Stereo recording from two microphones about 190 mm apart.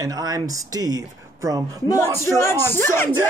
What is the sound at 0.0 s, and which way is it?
Speech, 20° right (ahead or behind).